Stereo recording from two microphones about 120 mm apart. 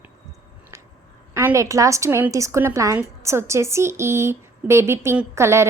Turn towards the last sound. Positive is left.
turn(degrees=-25)  # may be behind; listen again after turning